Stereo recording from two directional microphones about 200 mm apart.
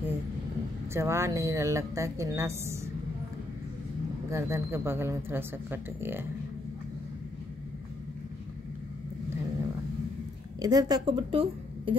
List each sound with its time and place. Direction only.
0.9 s speech: 15° right (ahead or behind)
4.3 s speech: 15° right (ahead or behind)
10.6 s a woman's voice: 20° right (ahead or behind)